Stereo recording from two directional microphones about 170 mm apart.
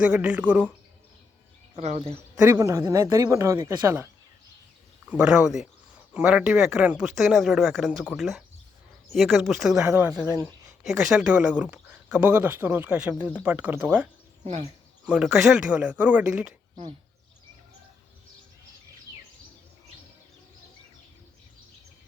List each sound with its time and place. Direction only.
0.0 s speech: 5° right (ahead or behind)
1.7 s speech: 40° right (ahead or behind)
2.4 s speech: 15° right (ahead or behind)
5.0 s speech: 5° right (ahead or behind)
14.4 s speech: 35° right (ahead or behind)
15.0 s speech: 5° right (ahead or behind)